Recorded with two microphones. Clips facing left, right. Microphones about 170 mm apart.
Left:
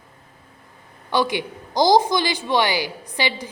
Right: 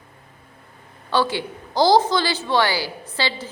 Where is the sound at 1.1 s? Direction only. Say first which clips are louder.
Even; 15° left (ahead or behind).